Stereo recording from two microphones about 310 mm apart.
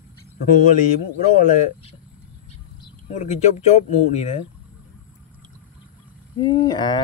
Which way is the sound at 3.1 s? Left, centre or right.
Left.